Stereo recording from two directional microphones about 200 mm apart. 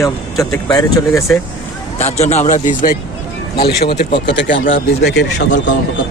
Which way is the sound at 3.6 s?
55° left (ahead or behind).